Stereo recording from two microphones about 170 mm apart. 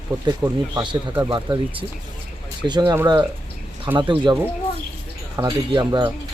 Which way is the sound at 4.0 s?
30° right (ahead or behind).